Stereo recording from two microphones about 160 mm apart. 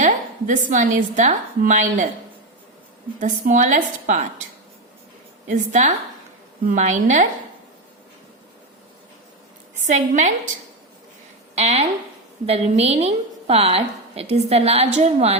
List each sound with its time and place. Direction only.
0.0 s a woman's voice: 50° right (ahead or behind)
3.2 s a woman's voice: 55° right (ahead or behind)
5.5 s a woman's voice: 50° right (ahead or behind)
9.7 s a woman's voice: 50° right (ahead or behind)
11.5 s a woman's voice: 40° right (ahead or behind)